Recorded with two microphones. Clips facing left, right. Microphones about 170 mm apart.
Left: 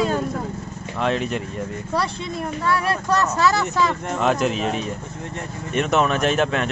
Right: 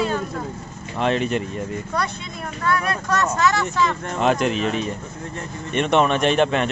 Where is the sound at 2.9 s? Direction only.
30° left (ahead or behind).